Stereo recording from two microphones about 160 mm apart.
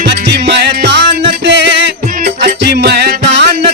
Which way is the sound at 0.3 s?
90° right.